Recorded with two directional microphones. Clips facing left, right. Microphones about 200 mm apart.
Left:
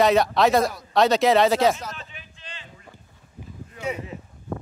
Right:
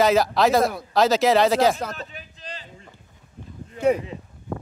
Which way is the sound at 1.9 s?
40° right (ahead or behind).